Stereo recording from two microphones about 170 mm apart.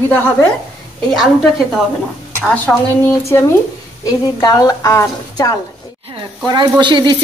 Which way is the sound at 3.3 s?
15° left (ahead or behind).